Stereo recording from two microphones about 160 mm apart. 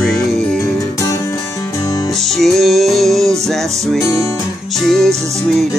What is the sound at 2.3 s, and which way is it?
Music, centre (ahead or behind).